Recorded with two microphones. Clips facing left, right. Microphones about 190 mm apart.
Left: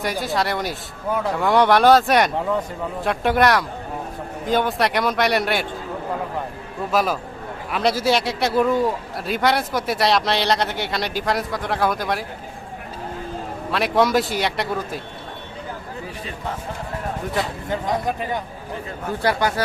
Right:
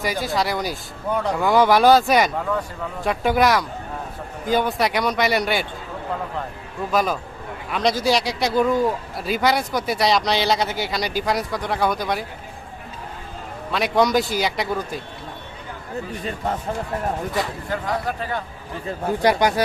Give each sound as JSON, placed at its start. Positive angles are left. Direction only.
{"t": 0.0, "sound": "a man's voice", "side_deg": 0}
{"t": 6.9, "sound": "a man's voice", "side_deg": 5}
{"t": 13.7, "sound": "a man's voice", "side_deg": 0}
{"t": 17.7, "sound": "speech", "side_deg": 20}
{"t": 19.2, "sound": "speech", "side_deg": -15}